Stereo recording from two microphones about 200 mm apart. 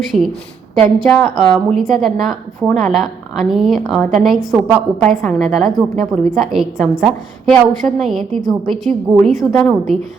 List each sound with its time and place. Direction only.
0.1 s a woman's voice: 35° right (ahead or behind)
0.8 s a woman's voice: 5° left (ahead or behind)